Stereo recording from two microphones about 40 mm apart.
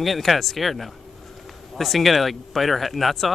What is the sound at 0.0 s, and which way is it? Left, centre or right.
Speech, centre.